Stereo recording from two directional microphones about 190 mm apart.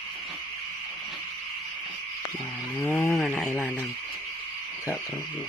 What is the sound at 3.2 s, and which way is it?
Radio, 5° left (ahead or behind).